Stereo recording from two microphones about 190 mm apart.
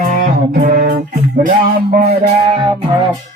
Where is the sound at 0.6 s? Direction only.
45° right (ahead or behind).